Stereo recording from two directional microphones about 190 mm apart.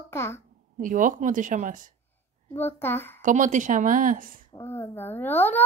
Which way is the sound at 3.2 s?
40° right (ahead or behind).